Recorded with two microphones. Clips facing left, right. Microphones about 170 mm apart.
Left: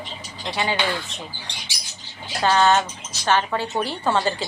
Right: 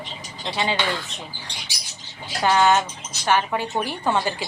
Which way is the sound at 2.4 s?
15° right (ahead or behind).